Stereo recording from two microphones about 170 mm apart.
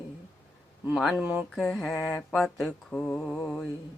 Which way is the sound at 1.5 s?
5° left (ahead or behind).